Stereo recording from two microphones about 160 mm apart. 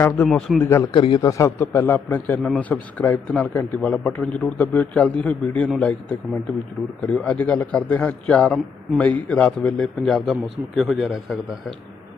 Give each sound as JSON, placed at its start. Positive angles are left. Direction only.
{"t": 0.2, "sound": "a man's voice", "side_deg": 0}
{"t": 0.6, "sound": "a man's voice", "side_deg": 15}
{"t": 0.9, "sound": "a man's voice", "side_deg": 30}
{"t": 1.4, "sound": "a man's voice", "side_deg": 15}